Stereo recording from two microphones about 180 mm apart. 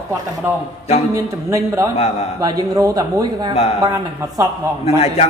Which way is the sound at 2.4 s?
20° right (ahead or behind).